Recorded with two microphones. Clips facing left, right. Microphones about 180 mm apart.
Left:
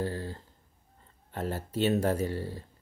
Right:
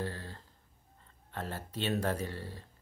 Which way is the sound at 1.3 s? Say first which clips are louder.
Left 6 dB; 30° left (ahead or behind).